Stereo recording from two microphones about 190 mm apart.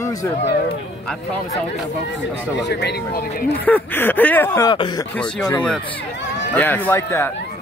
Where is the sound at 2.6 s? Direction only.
60° left (ahead or behind).